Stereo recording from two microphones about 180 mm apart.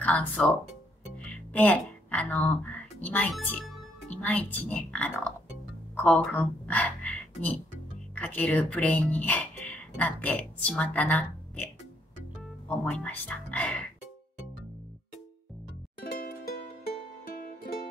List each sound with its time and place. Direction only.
0.0 s speech: 10° left (ahead or behind)
1.1 s music: 5° left (ahead or behind)
4.1 s speech: 10° left (ahead or behind)
16.0 s music: 55° left (ahead or behind)